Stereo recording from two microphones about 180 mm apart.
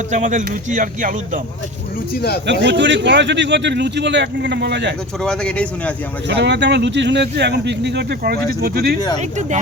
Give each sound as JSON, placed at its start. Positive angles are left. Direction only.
{"t": 0.1, "sound": "speech", "side_deg": -45}
{"t": 2.5, "sound": "speech", "side_deg": -80}
{"t": 5.2, "sound": "speech", "side_deg": 5}
{"t": 6.2, "sound": "speech", "side_deg": -75}